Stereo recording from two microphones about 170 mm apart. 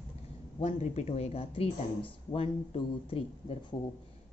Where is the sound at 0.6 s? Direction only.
40° left (ahead or behind).